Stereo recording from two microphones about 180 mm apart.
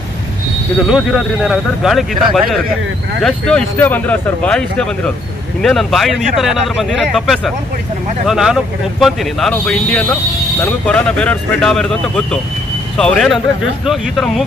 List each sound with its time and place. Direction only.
0.8 s speech: centre (ahead or behind)